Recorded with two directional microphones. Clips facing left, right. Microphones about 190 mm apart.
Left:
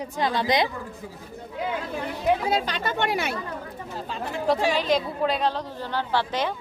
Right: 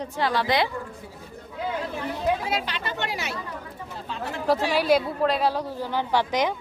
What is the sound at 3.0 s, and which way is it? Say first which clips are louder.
Speech: left 6 dB; 55° left (ahead or behind).